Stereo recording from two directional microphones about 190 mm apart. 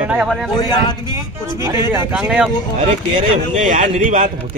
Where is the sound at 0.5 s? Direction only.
20° left (ahead or behind).